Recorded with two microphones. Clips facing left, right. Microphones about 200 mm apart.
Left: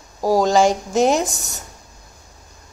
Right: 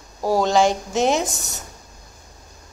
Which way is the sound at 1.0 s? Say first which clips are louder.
Even; 5° right (ahead or behind).